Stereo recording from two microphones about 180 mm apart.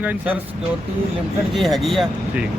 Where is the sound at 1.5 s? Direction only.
Centre (ahead or behind).